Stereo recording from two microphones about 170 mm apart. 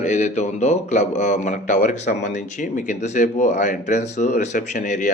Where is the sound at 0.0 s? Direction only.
45° left (ahead or behind).